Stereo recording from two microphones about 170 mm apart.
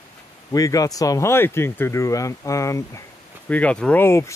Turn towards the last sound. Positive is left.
turn(degrees=15)  # may be behind; listen again after turning